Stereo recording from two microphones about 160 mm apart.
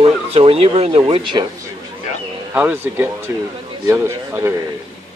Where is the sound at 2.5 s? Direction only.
10° right (ahead or behind).